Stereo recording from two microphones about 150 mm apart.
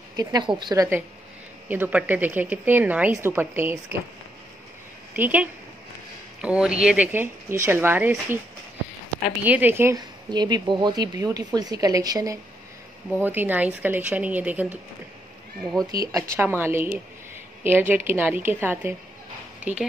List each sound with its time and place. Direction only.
0.1 s a woman's voice: 25° right (ahead or behind)
1.7 s a woman's voice: 10° right (ahead or behind)
5.1 s a woman's voice: 10° right (ahead or behind)
9.4 s a woman's voice: 10° right (ahead or behind)
9.9 s a woman's voice: 25° right (ahead or behind)
13.2 s a woman's voice: 15° right (ahead or behind)
15.6 s speech: 5° left (ahead or behind)
15.9 s a woman's voice: 25° right (ahead or behind)